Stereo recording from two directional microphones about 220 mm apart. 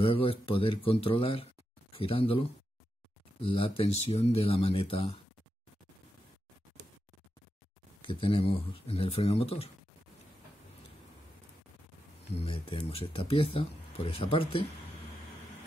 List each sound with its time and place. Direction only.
0.0 s speech: 25° left (ahead or behind)
8.0 s speech: 25° left (ahead or behind)
12.4 s speech: 25° left (ahead or behind)